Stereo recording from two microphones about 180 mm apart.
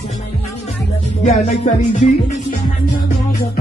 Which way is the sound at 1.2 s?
40° left (ahead or behind).